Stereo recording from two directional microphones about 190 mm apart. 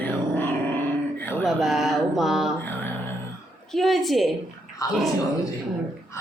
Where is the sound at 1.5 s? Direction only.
Centre (ahead or behind).